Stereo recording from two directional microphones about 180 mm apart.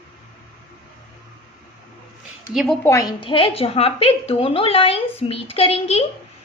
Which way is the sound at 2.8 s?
15° left (ahead or behind).